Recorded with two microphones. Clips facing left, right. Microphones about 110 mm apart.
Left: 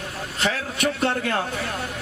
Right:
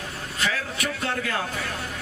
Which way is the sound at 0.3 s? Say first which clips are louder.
Left 3 dB; 30° left (ahead or behind).